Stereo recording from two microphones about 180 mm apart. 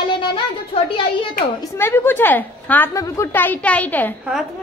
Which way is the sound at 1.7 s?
15° left (ahead or behind).